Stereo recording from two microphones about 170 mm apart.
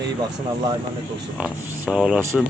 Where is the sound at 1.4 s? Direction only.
5° right (ahead or behind).